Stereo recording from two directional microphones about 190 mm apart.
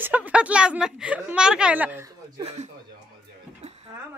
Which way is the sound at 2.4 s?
35° right (ahead or behind).